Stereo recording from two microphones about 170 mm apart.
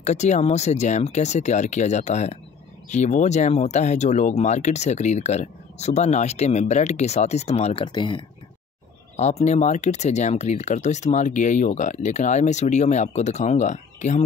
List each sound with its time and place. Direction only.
0.0 s speech: 40° left (ahead or behind)
9.1 s speech: 40° left (ahead or behind)